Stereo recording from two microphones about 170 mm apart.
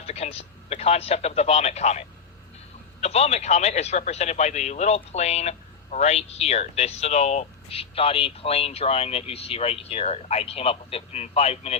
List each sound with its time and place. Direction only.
0.0 s speech: 40° left (ahead or behind)